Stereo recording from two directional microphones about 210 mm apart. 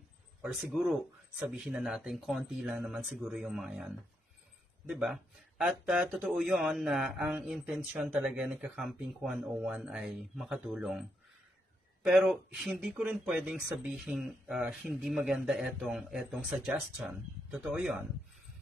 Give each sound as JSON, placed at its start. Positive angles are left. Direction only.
{"t": 0.4, "sound": "speech", "side_deg": -5}